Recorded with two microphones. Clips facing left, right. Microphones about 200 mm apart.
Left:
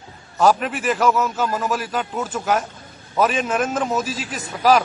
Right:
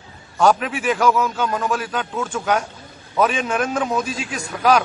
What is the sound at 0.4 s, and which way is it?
A man's voice, centre (ahead or behind).